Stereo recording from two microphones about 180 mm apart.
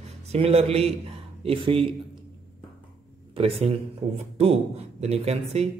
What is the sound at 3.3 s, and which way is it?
Speech, 30° right (ahead or behind).